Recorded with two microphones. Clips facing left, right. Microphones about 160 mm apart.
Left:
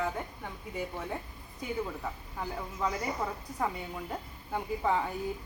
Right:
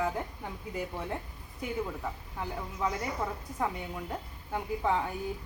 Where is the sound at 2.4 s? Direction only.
Centre (ahead or behind).